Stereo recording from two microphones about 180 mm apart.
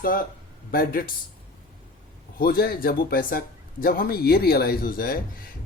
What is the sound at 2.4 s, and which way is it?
Speech, 55° left (ahead or behind).